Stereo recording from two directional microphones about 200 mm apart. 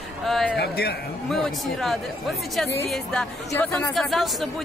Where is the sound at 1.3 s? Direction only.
Centre (ahead or behind).